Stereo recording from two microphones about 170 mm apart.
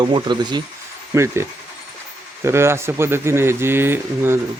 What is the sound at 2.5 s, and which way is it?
Speech, 15° right (ahead or behind).